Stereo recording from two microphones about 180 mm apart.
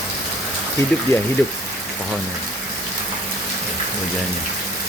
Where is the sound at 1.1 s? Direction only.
15° left (ahead or behind).